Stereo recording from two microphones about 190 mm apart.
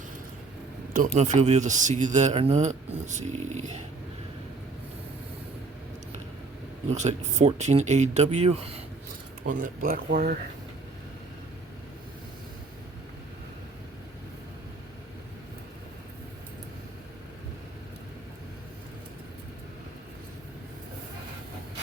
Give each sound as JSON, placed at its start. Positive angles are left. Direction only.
{"t": 0.9, "sound": "speech", "side_deg": -40}
{"t": 6.9, "sound": "speech", "side_deg": -40}
{"t": 9.5, "sound": "speech", "side_deg": -45}